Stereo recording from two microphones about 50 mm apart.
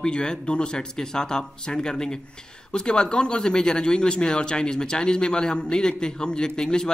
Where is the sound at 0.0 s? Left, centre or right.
Centre.